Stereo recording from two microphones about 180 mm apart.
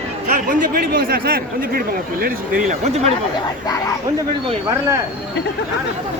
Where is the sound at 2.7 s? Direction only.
40° right (ahead or behind).